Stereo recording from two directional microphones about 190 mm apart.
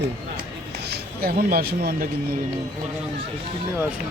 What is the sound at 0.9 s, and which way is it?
Speech, 50° right (ahead or behind).